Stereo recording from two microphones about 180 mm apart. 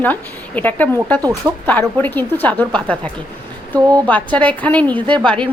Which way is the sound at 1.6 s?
10° left (ahead or behind).